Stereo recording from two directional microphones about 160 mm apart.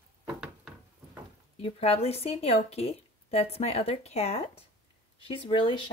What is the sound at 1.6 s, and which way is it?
A woman's voice, 40° left (ahead or behind).